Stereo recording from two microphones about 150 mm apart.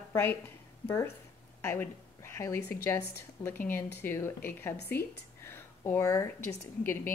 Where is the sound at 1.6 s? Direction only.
15° left (ahead or behind).